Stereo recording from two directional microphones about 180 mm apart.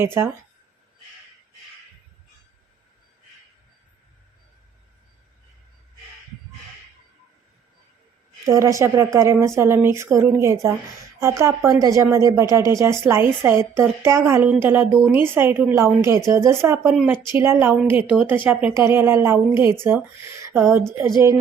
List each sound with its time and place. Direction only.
0.0 s a woman's voice: 15° right (ahead or behind)
8.4 s a woman's voice: 15° right (ahead or behind)